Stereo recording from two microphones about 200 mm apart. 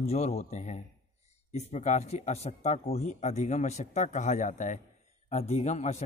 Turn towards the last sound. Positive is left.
turn(degrees=35)  # may be behind; listen again after turning